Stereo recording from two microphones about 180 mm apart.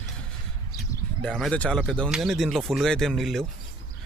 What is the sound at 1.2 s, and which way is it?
Speech, 5° left (ahead or behind).